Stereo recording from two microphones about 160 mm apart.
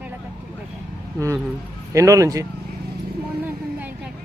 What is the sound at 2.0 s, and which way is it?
Speech, 20° right (ahead or behind).